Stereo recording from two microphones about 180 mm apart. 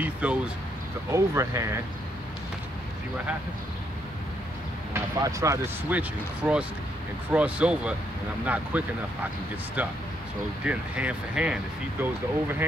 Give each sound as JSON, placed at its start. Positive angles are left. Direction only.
{"t": 0.0, "sound": "speech", "side_deg": -5}
{"t": 4.9, "sound": "speech", "side_deg": -15}